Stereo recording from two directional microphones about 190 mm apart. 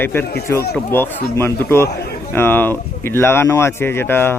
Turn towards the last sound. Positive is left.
turn(degrees=10)  # may be behind; listen again after turning